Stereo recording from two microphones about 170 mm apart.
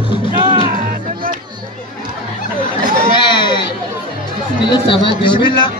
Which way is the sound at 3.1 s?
25° left (ahead or behind).